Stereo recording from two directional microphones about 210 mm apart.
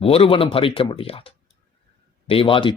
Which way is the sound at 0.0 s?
25° left (ahead or behind).